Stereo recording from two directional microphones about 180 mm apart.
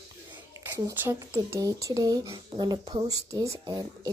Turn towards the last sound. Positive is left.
turn(degrees=-20)  # may be behind; listen again after turning